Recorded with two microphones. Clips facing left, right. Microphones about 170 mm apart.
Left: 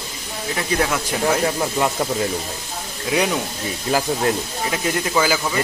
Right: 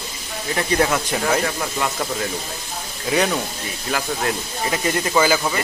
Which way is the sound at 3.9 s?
25° left (ahead or behind).